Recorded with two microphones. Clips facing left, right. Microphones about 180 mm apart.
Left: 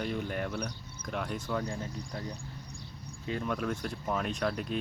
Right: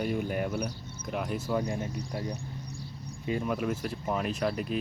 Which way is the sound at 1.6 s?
20° right (ahead or behind).